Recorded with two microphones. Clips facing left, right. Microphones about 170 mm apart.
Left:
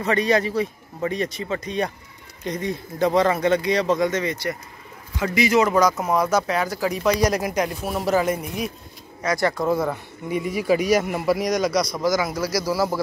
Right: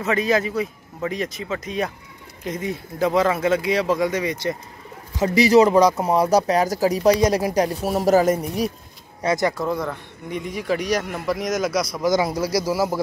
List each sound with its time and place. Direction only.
0.0 s speech: 5° right (ahead or behind)
5.1 s speech: 35° right (ahead or behind)
9.2 s speech: 25° right (ahead or behind)
9.7 s a man's voice: 5° left (ahead or behind)
12.0 s speech: 25° right (ahead or behind)